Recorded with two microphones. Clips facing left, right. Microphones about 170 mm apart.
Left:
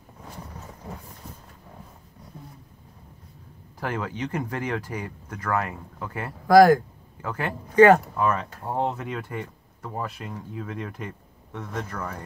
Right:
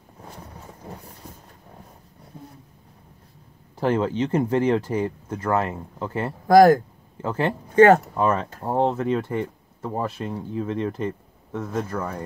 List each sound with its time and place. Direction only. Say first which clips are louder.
3.8 s speech: right 8 dB; 30° right (ahead or behind)